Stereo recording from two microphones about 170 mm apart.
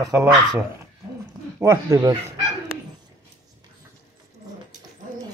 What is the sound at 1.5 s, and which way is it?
Speech, 20° right (ahead or behind).